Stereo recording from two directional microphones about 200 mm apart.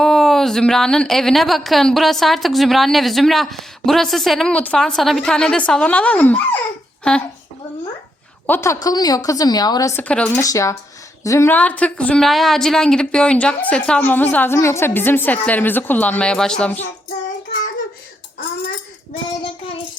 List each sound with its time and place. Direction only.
0.0 s a woman's voice: centre (ahead or behind)
8.4 s a woman's voice: 10° left (ahead or behind)